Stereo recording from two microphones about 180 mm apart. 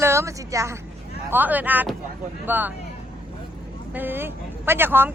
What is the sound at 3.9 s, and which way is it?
A woman's voice, 10° right (ahead or behind).